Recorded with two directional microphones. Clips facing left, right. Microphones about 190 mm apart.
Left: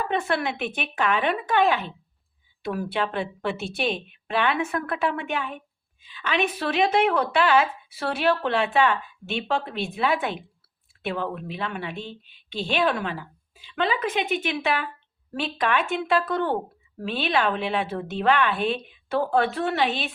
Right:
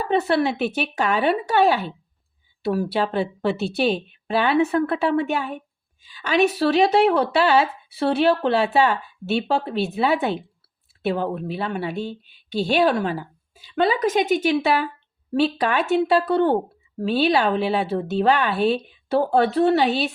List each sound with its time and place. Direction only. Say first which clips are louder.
0.0 s a woman's voice: right 6 dB; 35° right (ahead or behind)